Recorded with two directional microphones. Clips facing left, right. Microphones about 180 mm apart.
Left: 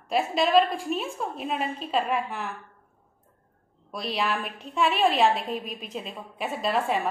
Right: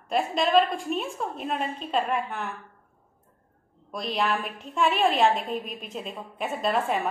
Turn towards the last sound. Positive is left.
turn(degrees=0)  # may be behind; listen again after turning